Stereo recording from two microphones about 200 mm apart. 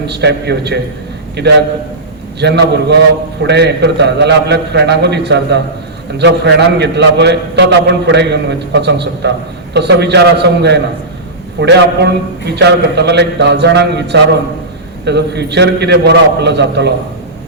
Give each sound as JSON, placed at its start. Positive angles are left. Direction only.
{"t": 0.1, "sound": "a man's voice", "side_deg": -55}
{"t": 2.4, "sound": "a man's voice", "side_deg": -60}